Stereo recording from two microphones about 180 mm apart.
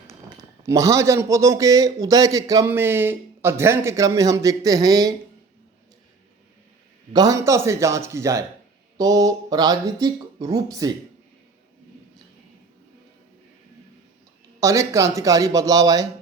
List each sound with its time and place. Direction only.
0.6 s a man's voice: 15° right (ahead or behind)
7.1 s a man's voice: 20° right (ahead or behind)
14.6 s speech: 15° right (ahead or behind)